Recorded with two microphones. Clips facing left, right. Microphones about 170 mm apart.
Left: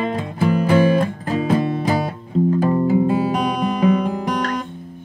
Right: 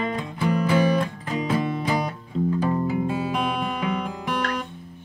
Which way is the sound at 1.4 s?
50° left (ahead or behind).